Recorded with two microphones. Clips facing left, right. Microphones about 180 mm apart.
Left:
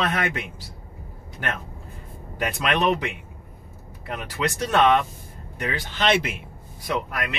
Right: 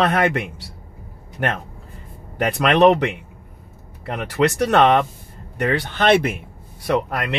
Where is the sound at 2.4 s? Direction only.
65° right (ahead or behind).